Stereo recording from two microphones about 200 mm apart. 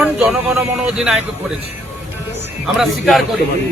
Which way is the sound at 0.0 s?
5° right (ahead or behind).